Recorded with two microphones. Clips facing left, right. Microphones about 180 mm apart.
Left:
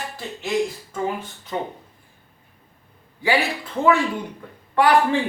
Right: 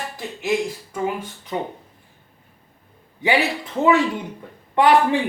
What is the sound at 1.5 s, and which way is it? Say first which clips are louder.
Speech: right 1 dB; 15° right (ahead or behind).